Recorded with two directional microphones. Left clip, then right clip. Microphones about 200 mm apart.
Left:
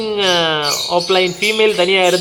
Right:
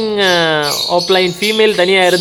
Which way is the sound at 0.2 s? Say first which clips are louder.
Right 2 dB; 25° right (ahead or behind).